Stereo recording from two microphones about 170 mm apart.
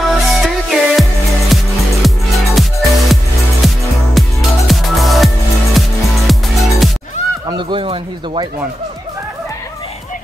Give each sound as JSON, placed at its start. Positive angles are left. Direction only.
{"t": 0.1, "sound": "music", "side_deg": 0}
{"t": 7.4, "sound": "speech", "side_deg": -30}